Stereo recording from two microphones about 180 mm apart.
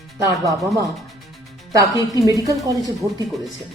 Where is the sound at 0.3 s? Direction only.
20° right (ahead or behind).